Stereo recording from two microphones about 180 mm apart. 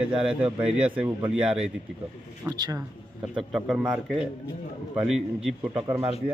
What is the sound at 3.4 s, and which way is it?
A man's voice, centre (ahead or behind).